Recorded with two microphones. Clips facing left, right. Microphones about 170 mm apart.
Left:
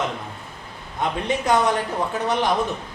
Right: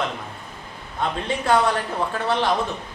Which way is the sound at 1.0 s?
20° left (ahead or behind).